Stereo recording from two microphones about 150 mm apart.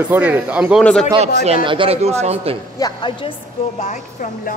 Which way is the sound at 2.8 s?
30° left (ahead or behind).